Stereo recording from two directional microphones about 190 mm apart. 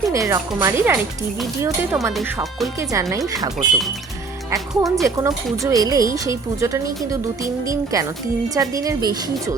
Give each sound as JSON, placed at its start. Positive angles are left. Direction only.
{"t": 0.1, "sound": "a woman's voice", "side_deg": -15}
{"t": 2.9, "sound": "a woman's voice", "side_deg": -15}